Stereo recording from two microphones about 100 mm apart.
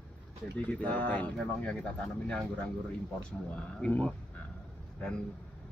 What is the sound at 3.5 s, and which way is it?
Speech, 10° left (ahead or behind).